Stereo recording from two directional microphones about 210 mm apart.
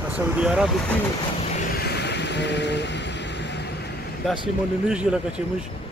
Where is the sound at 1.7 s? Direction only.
50° left (ahead or behind).